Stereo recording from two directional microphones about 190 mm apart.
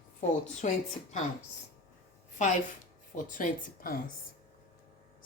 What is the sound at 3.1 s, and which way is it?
Speech, 45° left (ahead or behind).